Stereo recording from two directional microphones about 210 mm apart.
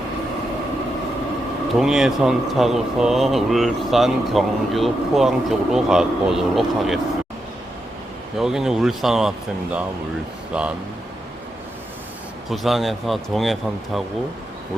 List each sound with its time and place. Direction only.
1.8 s speech: centre (ahead or behind)
8.4 s speech: centre (ahead or behind)
10.5 s speech: 5° right (ahead or behind)
12.5 s speech: centre (ahead or behind)